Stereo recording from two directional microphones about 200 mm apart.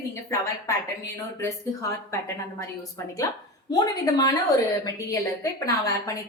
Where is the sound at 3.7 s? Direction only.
20° left (ahead or behind).